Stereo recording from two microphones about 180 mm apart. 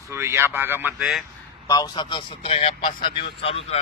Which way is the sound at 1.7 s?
25° left (ahead or behind).